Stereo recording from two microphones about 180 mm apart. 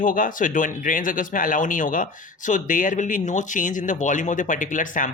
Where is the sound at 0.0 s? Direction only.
50° left (ahead or behind).